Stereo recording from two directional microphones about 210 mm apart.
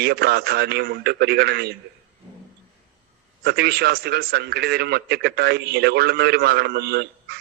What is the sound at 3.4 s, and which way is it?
A man's voice, 50° right (ahead or behind).